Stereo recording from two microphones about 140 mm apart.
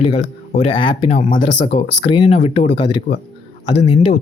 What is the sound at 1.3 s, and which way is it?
Speech, 40° left (ahead or behind).